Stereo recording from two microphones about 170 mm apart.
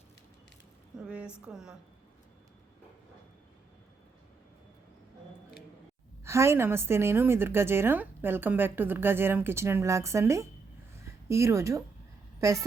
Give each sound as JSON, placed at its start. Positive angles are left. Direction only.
{"t": 0.9, "sound": "a woman's voice", "side_deg": -5}
{"t": 6.2, "sound": "a woman's voice", "side_deg": -15}